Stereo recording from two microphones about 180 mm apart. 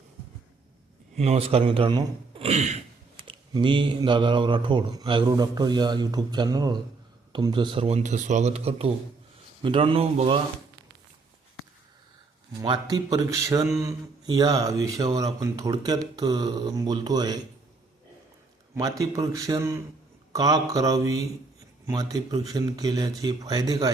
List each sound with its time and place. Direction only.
1.1 s speech: 35° right (ahead or behind)
12.6 s speech: 25° right (ahead or behind)
18.7 s speech: 20° right (ahead or behind)